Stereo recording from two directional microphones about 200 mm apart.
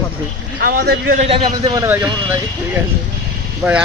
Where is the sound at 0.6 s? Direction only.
50° right (ahead or behind).